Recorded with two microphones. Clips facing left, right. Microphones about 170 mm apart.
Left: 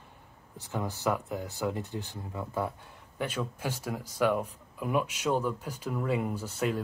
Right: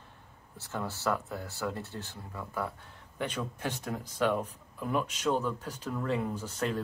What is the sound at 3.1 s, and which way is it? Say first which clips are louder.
Speech: left 2 dB; 5° left (ahead or behind).